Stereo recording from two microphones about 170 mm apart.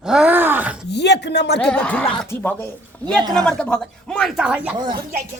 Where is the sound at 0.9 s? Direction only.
80° left.